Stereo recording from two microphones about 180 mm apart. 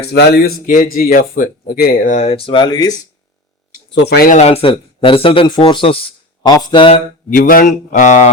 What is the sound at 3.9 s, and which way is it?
Speech, 70° left (ahead or behind).